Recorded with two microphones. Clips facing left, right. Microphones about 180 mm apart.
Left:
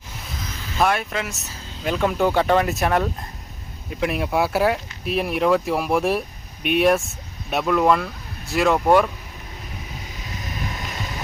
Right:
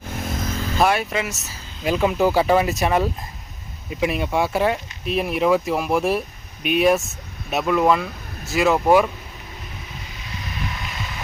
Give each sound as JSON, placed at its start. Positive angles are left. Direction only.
{"t": 0.1, "sound": "vehicle", "side_deg": -50}
{"t": 0.8, "sound": "speech", "side_deg": -5}